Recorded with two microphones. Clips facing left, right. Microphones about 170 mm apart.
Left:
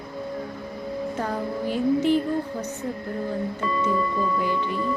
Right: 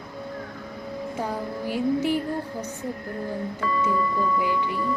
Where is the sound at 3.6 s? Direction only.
20° left (ahead or behind).